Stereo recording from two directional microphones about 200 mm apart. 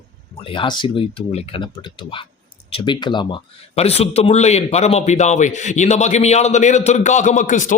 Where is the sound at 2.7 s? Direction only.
25° left (ahead or behind).